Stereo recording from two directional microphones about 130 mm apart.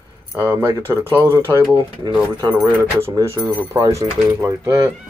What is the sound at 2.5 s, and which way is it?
Speech, 15° right (ahead or behind).